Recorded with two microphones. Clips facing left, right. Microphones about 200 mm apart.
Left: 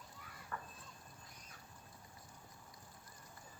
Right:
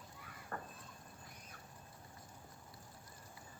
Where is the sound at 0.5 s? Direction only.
40° right (ahead or behind).